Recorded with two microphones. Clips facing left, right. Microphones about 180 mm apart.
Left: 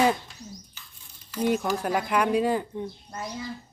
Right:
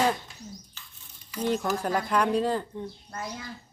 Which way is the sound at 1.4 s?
10° left (ahead or behind).